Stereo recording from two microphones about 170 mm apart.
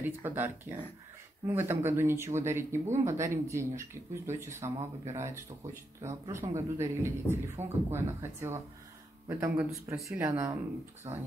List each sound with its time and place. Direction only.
0.0 s speech: 10° right (ahead or behind)